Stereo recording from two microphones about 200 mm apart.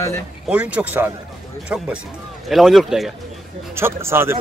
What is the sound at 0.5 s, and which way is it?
Speech, 5° right (ahead or behind).